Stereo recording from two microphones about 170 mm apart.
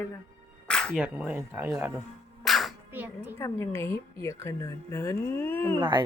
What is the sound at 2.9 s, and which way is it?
Speech, 10° right (ahead or behind).